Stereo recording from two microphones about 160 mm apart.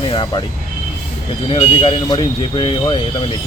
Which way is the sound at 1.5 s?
30° left (ahead or behind).